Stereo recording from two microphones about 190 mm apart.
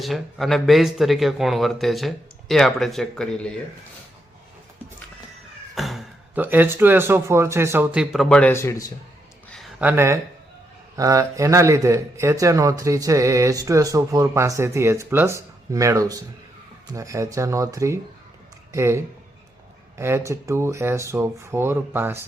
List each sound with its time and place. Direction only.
0.0 s speech: centre (ahead or behind)
5.7 s speech: centre (ahead or behind)
9.5 s a sound: centre (ahead or behind)
10.9 s speech: 15° right (ahead or behind)